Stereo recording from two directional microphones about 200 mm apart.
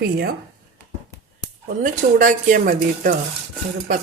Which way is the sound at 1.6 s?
40° right (ahead or behind).